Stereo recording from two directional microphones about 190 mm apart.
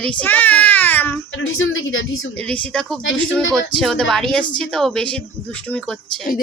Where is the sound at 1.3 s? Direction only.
85° left.